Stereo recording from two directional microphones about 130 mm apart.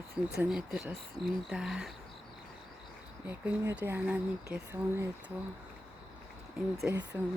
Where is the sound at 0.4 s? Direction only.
5° right (ahead or behind).